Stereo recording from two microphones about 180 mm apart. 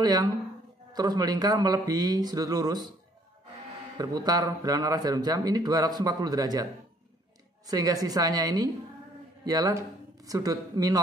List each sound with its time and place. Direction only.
0.0 s a man's voice: 20° right (ahead or behind)
4.0 s a man's voice: 20° right (ahead or behind)